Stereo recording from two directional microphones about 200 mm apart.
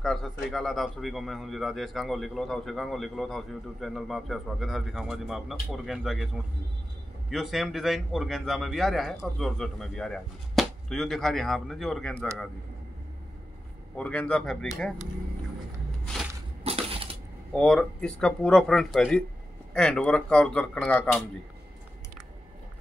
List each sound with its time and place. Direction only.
0.0 s speech: centre (ahead or behind)
13.9 s speech: 5° left (ahead or behind)
16.6 s crushing: 30° right (ahead or behind)
17.6 s speech: 5° left (ahead or behind)